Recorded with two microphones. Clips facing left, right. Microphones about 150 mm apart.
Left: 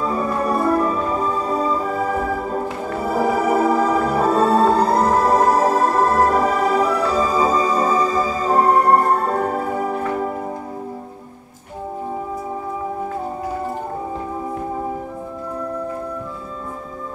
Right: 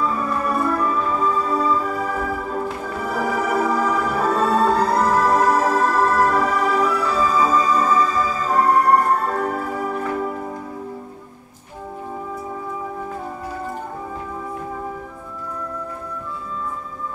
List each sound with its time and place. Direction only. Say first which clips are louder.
0.0 s music: left 2 dB; 30° left (ahead or behind)